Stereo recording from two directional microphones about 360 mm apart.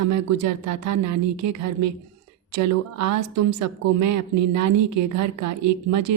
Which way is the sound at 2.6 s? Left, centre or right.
Right.